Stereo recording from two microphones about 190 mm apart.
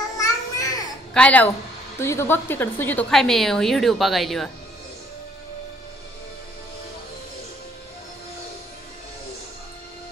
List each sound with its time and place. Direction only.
0.2 s babbling: 20° left (ahead or behind)
1.1 s a woman's voice: 5° left (ahead or behind)